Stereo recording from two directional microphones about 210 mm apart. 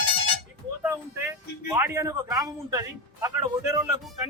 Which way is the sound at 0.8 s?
10° right (ahead or behind).